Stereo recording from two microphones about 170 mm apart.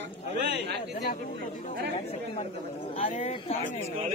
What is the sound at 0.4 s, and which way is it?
Speech, 80° right.